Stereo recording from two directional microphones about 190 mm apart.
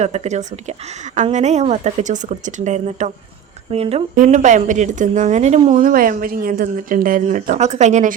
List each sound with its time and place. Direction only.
0.0 s speech: 35° right (ahead or behind)
4.1 s speech: 40° right (ahead or behind)